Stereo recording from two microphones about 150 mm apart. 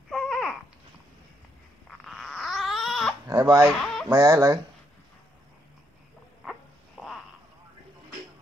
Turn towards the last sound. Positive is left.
turn(degrees=0)  # may be behind; listen again after turning